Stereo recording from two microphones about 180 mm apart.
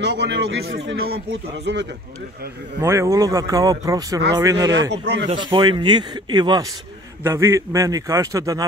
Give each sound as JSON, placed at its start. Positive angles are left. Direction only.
{"t": 0.0, "sound": "speech", "side_deg": -75}
{"t": 2.8, "sound": "a man's voice", "side_deg": -15}
{"t": 4.9, "sound": "speech", "side_deg": -75}
{"t": 5.3, "sound": "a man's voice", "side_deg": -25}